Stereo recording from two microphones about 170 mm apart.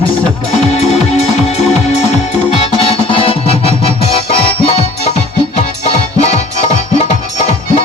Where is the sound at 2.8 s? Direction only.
35° left (ahead or behind).